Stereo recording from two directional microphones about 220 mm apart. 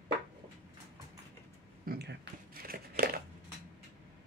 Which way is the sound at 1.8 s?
45° right (ahead or behind).